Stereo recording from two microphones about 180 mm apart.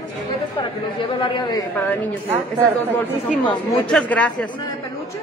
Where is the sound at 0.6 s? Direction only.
30° left (ahead or behind).